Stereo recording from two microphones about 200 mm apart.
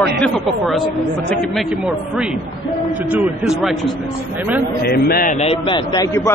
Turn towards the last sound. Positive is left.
turn(degrees=25)  # may be behind; listen again after turning